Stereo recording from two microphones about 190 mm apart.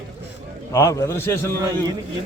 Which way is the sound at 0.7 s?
15° left (ahead or behind).